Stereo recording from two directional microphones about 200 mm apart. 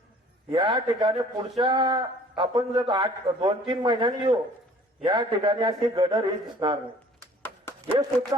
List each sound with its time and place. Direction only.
0.5 s speech: 20° right (ahead or behind)
7.4 s dog: 10° left (ahead or behind)
8.3 s speech: 20° right (ahead or behind)